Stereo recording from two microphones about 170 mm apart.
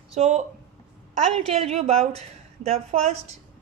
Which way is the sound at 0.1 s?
40° right (ahead or behind).